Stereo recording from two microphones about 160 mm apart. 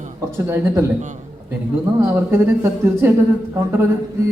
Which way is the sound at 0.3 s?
15° right (ahead or behind).